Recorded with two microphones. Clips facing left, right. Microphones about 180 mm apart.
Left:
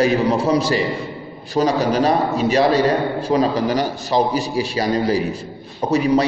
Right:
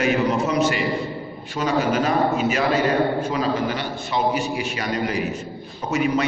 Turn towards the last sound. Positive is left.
turn(degrees=35)  # may be behind; listen again after turning